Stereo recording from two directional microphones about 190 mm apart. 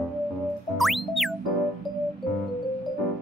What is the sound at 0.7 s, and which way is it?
Music, centre (ahead or behind).